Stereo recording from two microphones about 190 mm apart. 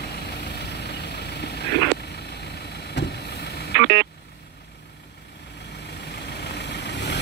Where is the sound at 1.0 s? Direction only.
60° left (ahead or behind).